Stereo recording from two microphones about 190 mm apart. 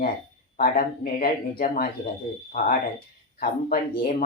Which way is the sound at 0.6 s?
50° left (ahead or behind).